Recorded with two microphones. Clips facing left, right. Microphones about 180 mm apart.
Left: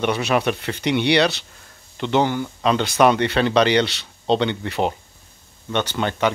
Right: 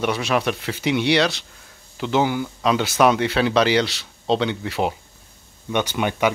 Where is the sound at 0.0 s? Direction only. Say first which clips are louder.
Left 1 dB; centre (ahead or behind).